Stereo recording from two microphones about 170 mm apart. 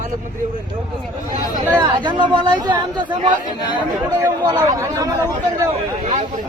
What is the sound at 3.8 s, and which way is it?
Speech, 20° right (ahead or behind).